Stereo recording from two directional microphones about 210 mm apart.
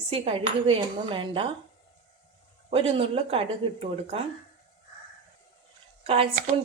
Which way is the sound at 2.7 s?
25° right (ahead or behind).